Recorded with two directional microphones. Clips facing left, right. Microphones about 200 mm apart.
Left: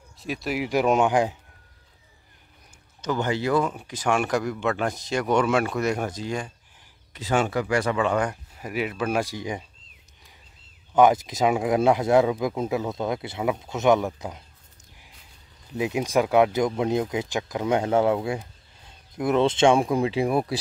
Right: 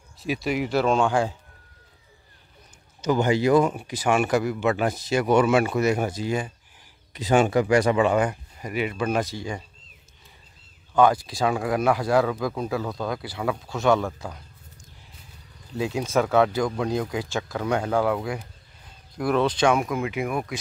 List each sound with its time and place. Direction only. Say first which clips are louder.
0.2 s speech: right 2 dB; centre (ahead or behind)
0.7 s speech: left 2 dB; 15° left (ahead or behind)
3.0 s speech: right 4 dB; 10° right (ahead or behind); by 9.6 s 15° left (ahead or behind)
11.0 s speech: left 1 dB; 20° left (ahead or behind)
15.7 s speech: left 1 dB; 15° left (ahead or behind); by 20.5 s 35° left (ahead or behind)